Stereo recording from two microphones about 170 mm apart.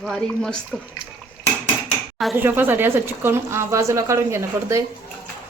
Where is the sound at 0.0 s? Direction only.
5° left (ahead or behind).